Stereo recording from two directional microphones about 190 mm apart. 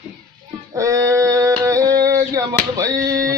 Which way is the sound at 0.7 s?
15° right (ahead or behind).